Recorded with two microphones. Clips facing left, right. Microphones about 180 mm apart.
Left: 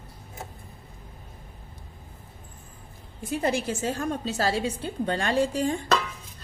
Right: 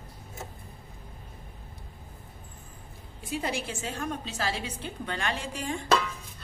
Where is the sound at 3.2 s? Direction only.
40° left (ahead or behind).